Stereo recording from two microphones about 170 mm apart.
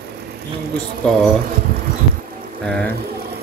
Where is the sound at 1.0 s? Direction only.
5° left (ahead or behind).